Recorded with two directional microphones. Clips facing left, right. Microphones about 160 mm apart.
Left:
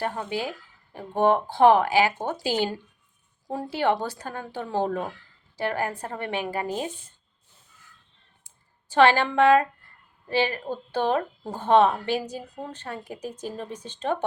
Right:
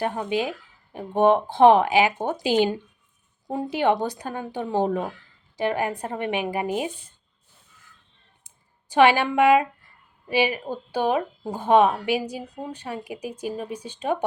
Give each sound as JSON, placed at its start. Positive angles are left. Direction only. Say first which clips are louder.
{"t": 0.0, "sound": "speech", "louder": "right 4 dB", "side_deg": -15}
{"t": 8.4, "sound": "speech", "louder": "right 2 dB", "side_deg": -15}